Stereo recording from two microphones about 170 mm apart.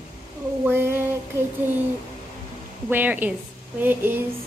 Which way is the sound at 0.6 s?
15° right (ahead or behind).